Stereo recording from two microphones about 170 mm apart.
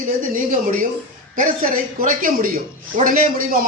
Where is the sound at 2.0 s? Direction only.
55° right (ahead or behind).